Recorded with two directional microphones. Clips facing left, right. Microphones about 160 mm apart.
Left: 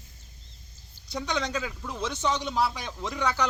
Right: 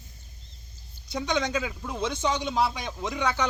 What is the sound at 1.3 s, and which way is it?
Speech, 10° right (ahead or behind).